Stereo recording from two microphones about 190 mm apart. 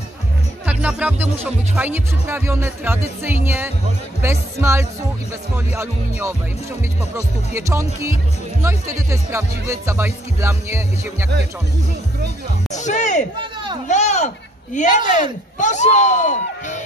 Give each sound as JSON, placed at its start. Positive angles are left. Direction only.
{"t": 0.7, "sound": "speech", "side_deg": -5}
{"t": 12.7, "sound": "speech", "side_deg": 40}